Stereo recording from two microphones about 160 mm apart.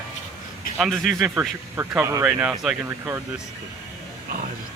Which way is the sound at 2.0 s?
15° right (ahead or behind).